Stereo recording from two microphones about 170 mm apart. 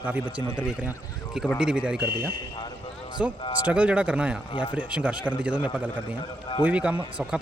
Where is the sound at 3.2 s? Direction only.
10° right (ahead or behind).